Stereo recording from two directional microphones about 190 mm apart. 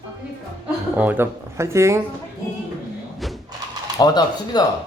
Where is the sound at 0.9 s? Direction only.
10° right (ahead or behind).